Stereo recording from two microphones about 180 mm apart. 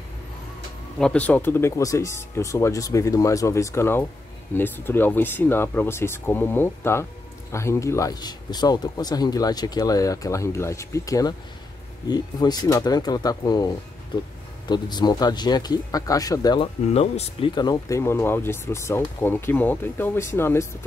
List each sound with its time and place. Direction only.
0.9 s speech: 5° left (ahead or behind); by 13.7 s 20° left (ahead or behind)
14.7 s speech: 25° left (ahead or behind)
16.8 s speech: 35° left (ahead or behind)
17.6 s speech: 20° left (ahead or behind)